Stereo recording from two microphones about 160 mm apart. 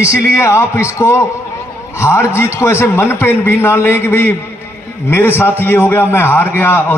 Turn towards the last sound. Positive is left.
turn(degrees=15)  # may be behind; listen again after turning